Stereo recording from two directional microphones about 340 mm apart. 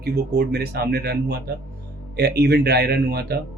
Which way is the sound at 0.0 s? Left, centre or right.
Right.